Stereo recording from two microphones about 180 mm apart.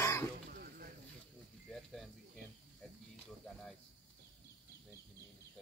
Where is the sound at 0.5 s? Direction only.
55° right (ahead or behind).